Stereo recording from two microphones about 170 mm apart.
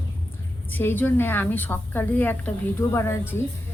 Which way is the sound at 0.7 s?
10° left (ahead or behind).